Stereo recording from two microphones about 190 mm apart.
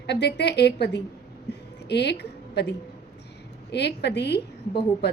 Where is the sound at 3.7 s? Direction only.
60° left (ahead or behind).